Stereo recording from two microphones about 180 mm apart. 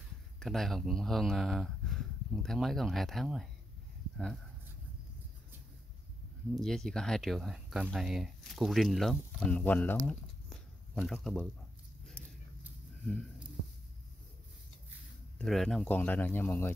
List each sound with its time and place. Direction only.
0.4 s speech: centre (ahead or behind)
6.6 s speech: centre (ahead or behind)
15.3 s speech: centre (ahead or behind)